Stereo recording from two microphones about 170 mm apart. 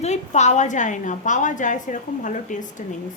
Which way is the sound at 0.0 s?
40° left (ahead or behind).